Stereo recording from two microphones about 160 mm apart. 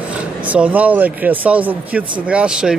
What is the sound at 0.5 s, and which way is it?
Speech, 10° right (ahead or behind).